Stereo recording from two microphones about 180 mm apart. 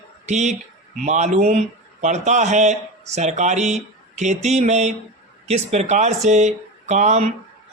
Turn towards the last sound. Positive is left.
turn(degrees=-40)  # may be behind; listen again after turning